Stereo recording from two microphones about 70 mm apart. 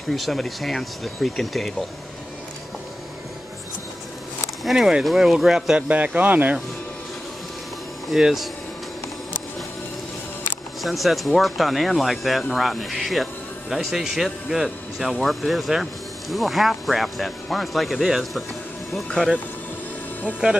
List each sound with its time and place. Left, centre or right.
0.1 s speech: centre
4.6 s speech: centre
5.8 s speech: centre
8.1 s speech: centre
10.8 s speech: centre